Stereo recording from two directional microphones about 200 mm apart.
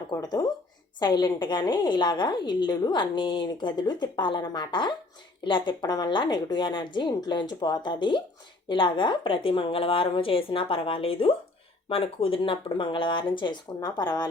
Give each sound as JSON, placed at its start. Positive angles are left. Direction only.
{"t": 0.2, "sound": "a woman's voice", "side_deg": 20}